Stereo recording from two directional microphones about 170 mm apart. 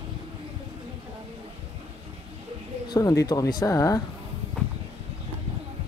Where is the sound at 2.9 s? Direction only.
20° left (ahead or behind).